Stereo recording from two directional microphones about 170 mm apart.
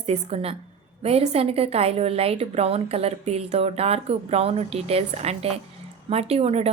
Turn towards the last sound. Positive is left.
turn(degrees=-35)  # may be behind; listen again after turning